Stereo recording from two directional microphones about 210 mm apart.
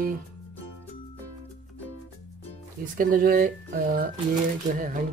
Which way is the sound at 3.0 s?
40° right (ahead or behind).